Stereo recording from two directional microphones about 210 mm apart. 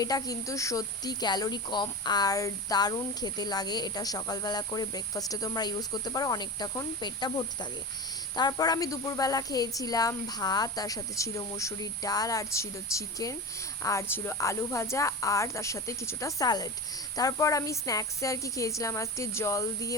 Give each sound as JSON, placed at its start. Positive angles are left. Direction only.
{"t": 0.0, "sound": "speech", "side_deg": 15}